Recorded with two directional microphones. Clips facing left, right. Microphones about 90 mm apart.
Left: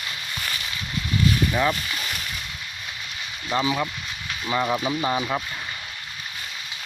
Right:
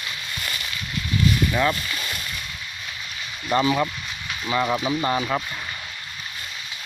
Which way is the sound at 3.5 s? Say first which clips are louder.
Right 3 dB; centre (ahead or behind).